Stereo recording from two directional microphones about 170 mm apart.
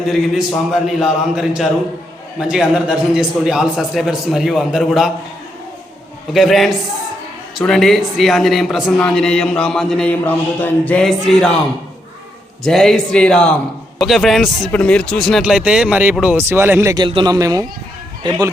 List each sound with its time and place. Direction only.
0.1 s speech: centre (ahead or behind)
6.3 s speech: centre (ahead or behind)
12.6 s a man's voice: centre (ahead or behind); by 18.5 s 25° right (ahead or behind)